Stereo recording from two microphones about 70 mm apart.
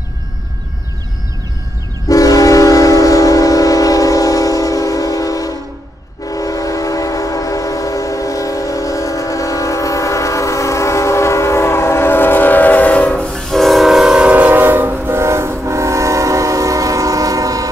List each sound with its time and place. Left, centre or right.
2.0 s train: left; by 13.4 s centre
13.5 s train: centre
14.3 s train: right